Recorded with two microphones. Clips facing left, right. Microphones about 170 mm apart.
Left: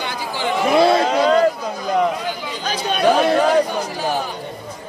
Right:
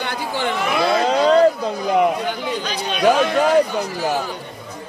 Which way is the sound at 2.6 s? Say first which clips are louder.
Left 1 dB; 45° left (ahead or behind).